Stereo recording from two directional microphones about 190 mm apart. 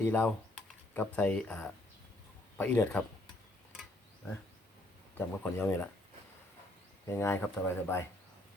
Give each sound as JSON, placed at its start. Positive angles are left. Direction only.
{"t": 0.0, "sound": "speech", "side_deg": 10}
{"t": 5.1, "sound": "speech", "side_deg": 10}
{"t": 7.1, "sound": "speech", "side_deg": 10}